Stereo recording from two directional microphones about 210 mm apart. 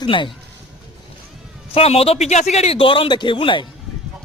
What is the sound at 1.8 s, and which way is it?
Speech, 30° left (ahead or behind).